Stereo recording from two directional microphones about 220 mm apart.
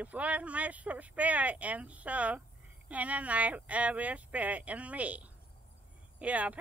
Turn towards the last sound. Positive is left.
turn(degrees=-5)  # may be behind; listen again after turning